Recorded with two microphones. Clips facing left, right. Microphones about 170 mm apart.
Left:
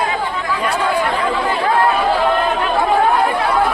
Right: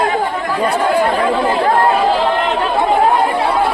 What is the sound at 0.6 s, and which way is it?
Chatter, 30° right (ahead or behind).